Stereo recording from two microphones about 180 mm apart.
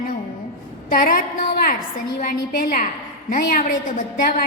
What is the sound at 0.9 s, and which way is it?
A woman's voice, 50° left (ahead or behind).